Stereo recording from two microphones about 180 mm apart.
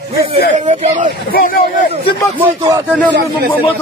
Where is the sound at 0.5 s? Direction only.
40° right (ahead or behind).